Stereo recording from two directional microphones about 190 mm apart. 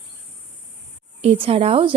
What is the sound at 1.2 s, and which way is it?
Speech, 30° right (ahead or behind).